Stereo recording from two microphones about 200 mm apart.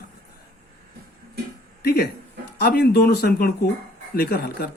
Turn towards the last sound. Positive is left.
turn(degrees=50)  # may be behind; listen again after turning